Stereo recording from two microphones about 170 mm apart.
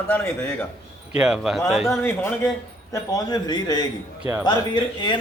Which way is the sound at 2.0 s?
15° left (ahead or behind).